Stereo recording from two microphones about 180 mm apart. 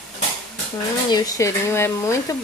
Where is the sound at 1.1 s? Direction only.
20° left (ahead or behind).